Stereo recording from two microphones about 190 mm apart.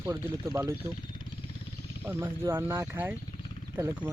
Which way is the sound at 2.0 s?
15° right (ahead or behind).